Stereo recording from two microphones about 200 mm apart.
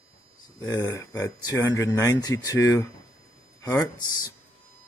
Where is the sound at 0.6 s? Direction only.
15° left (ahead or behind).